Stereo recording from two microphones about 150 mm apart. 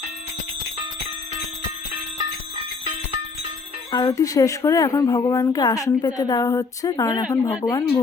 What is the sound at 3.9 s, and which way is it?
A woman's voice, 25° left (ahead or behind).